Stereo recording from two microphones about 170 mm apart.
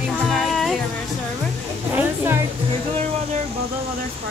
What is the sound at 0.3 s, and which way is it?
Music, centre (ahead or behind).